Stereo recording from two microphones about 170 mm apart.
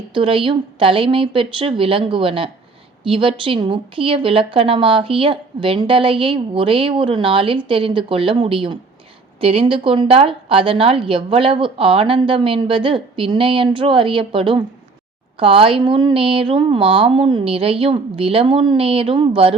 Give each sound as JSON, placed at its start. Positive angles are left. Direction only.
{"t": 0.1, "sound": "a woman's voice", "side_deg": -30}